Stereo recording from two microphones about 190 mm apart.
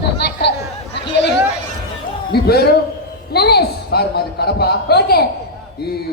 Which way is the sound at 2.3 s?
55° left (ahead or behind).